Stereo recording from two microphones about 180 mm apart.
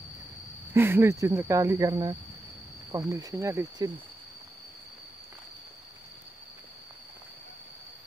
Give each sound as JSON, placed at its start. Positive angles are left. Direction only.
{"t": 0.7, "sound": "speech", "side_deg": -15}